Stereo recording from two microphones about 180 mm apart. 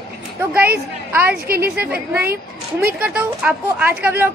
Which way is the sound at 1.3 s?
60° right (ahead or behind).